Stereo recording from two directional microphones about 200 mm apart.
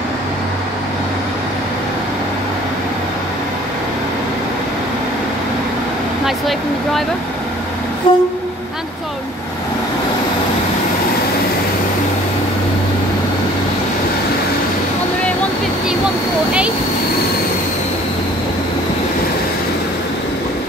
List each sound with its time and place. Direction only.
6.2 s speech: centre (ahead or behind)
8.1 s train: 25° left (ahead or behind)